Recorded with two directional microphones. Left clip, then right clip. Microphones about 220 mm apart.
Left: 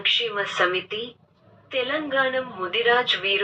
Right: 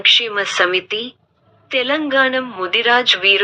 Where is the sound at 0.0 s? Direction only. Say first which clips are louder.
Right 9 dB; 30° right (ahead or behind).